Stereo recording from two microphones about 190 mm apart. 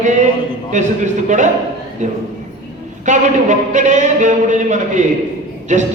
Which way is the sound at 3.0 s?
40° right (ahead or behind).